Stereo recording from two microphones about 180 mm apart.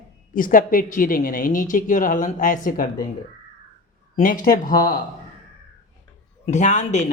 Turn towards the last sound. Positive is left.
turn(degrees=40)  # may be behind; listen again after turning